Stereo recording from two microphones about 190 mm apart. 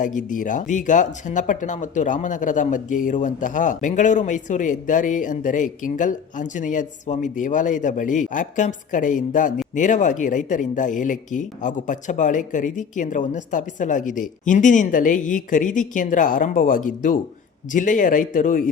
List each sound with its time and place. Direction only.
0.0 s speech: 40° left (ahead or behind)